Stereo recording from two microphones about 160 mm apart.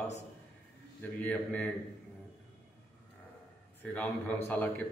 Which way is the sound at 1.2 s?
10° left (ahead or behind).